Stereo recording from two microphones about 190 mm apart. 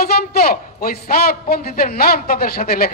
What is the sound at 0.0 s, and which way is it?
A man's voice, 55° left (ahead or behind).